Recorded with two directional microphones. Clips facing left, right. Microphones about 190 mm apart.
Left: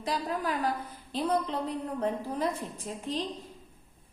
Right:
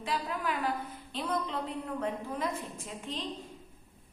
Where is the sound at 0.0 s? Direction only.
35° left (ahead or behind).